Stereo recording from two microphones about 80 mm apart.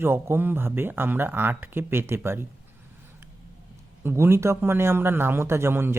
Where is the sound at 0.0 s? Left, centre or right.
Right.